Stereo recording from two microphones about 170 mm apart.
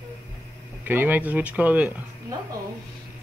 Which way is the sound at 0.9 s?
10° right (ahead or behind).